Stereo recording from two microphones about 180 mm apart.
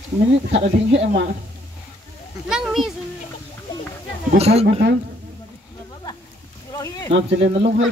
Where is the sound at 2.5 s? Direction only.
Centre (ahead or behind).